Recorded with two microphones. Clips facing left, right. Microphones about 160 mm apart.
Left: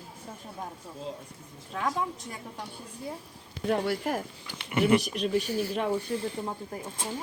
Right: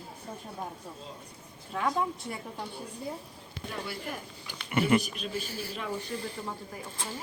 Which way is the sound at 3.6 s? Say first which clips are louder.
Left 10 dB; 75° left (ahead or behind).